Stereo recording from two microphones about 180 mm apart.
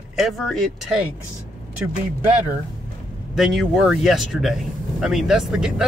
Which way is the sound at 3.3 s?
Centre (ahead or behind).